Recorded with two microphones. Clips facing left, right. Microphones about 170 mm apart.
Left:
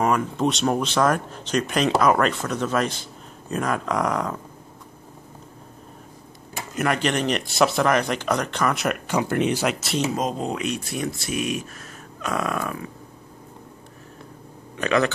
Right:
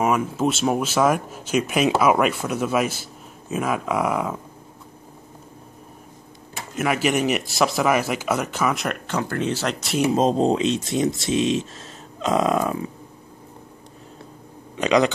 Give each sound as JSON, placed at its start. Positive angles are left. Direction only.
{"t": 0.0, "sound": "speech", "side_deg": -5}
{"t": 6.7, "sound": "speech", "side_deg": -5}
{"t": 10.1, "sound": "speech", "side_deg": -30}
{"t": 14.8, "sound": "speech", "side_deg": -15}